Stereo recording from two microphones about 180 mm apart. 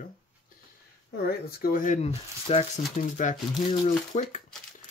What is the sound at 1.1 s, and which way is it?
Speech, 60° left (ahead or behind).